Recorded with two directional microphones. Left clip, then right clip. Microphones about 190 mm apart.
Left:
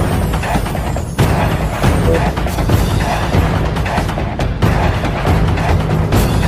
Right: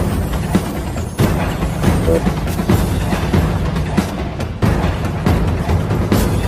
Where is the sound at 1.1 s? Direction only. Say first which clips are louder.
Left 3 dB; centre (ahead or behind).